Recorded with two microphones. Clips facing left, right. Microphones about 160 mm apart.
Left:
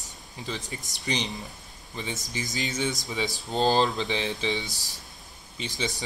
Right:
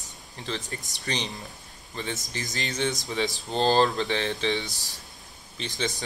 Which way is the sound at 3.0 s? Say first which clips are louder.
Right 2 dB; 20° left (ahead or behind).